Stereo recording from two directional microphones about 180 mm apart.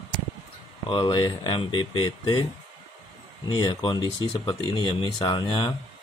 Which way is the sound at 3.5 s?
25° left (ahead or behind).